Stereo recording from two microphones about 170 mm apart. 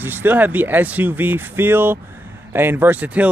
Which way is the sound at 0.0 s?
10° right (ahead or behind).